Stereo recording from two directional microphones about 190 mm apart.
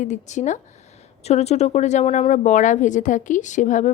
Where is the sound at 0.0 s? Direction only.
40° left (ahead or behind).